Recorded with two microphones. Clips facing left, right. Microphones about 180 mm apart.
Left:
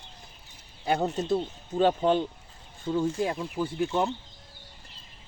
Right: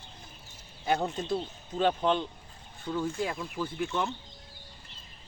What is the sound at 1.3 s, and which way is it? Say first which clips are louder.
Speech: left 5 dB; 40° left (ahead or behind).